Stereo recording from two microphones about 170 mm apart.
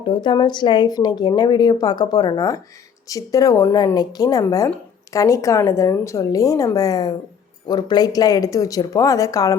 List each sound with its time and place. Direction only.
0.0 s a woman's voice: 25° left (ahead or behind)